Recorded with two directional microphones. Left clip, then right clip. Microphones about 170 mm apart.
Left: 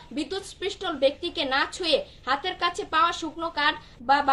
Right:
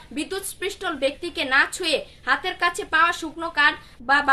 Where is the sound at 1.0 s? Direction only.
45° right (ahead or behind).